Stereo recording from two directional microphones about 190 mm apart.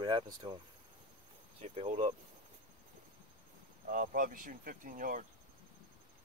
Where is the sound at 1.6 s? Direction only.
35° right (ahead or behind).